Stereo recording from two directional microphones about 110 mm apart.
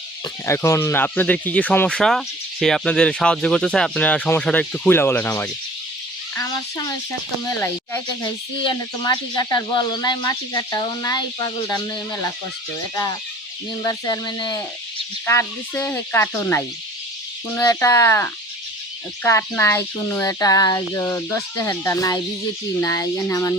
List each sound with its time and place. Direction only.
0.4 s speech: 25° left (ahead or behind)
2.0 s speech: 5° left (ahead or behind); by 5.5 s 20° left (ahead or behind)
6.3 s speech: 35° left (ahead or behind)
7.5 s speech: 20° left (ahead or behind)
9.0 s speech: 35° left (ahead or behind)
13.8 s speech: 40° left (ahead or behind)
15.7 s speech: 15° left (ahead or behind)
20.2 s speech: 35° left (ahead or behind)